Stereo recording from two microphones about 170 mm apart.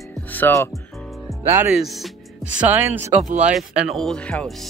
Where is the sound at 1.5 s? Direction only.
15° right (ahead or behind).